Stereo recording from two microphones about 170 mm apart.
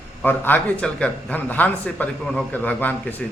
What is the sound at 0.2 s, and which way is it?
Mantra, 10° left (ahead or behind).